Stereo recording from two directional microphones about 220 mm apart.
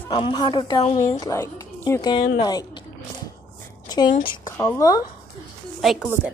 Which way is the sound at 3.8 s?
20° left (ahead or behind).